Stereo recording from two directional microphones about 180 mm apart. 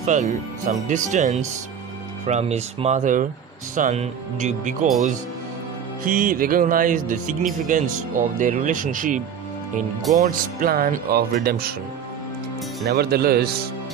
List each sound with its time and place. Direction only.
0.0 s speech: 45° right (ahead or behind)
6.1 s speech: 50° right (ahead or behind)
12.8 s speech: 60° right (ahead or behind)